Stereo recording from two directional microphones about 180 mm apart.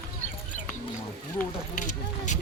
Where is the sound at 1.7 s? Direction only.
45° left (ahead or behind).